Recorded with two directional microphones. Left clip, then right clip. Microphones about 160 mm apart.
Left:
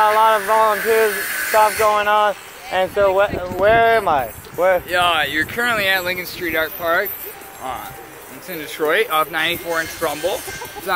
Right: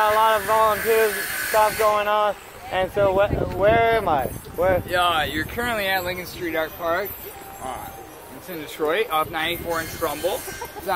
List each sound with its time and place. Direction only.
0.0 s a sound: 45° left (ahead or behind)
0.8 s speech: 45° left (ahead or behind)
4.8 s speech: 15° left (ahead or behind)
8.5 s speech: 10° left (ahead or behind)